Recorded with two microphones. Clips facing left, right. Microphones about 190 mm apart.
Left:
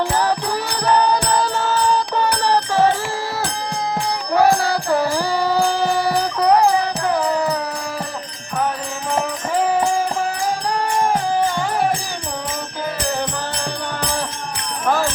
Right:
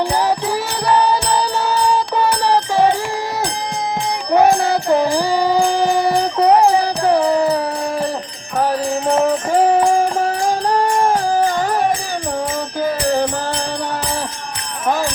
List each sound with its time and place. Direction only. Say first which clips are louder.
0.0 s music: right 2 dB; 15° right (ahead or behind)
4.4 s music: right 3 dB; 20° right (ahead or behind); by 9.7 s 35° right (ahead or behind)
10.8 s music: right 3 dB; 40° right (ahead or behind)